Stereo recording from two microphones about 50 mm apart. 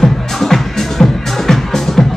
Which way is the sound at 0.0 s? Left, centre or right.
Centre.